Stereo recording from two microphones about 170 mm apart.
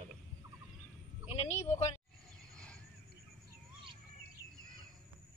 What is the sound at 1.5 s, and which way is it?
Speech, 45° left (ahead or behind).